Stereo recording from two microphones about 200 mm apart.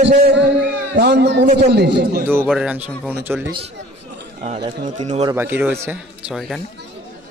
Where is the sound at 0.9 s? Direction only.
60° right (ahead or behind).